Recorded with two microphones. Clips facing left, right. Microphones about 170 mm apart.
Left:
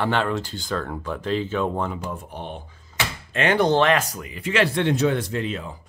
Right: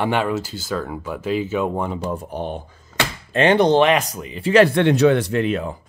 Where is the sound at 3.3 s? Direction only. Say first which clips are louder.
Right 5 dB; 30° right (ahead or behind).